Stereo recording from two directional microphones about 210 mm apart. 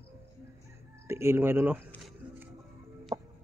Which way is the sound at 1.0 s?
10° right (ahead or behind).